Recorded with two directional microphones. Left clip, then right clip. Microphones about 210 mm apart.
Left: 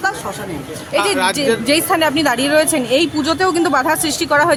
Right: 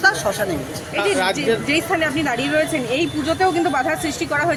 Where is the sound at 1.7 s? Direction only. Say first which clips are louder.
Left 5 dB; 50° left (ahead or behind).